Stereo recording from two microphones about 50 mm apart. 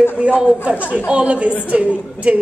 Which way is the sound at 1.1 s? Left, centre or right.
Right.